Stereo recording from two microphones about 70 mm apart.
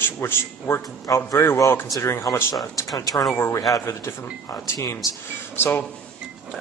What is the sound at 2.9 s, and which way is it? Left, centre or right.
Speech, left.